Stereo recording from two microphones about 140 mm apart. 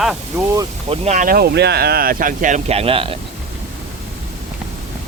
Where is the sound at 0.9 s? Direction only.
55° right (ahead or behind).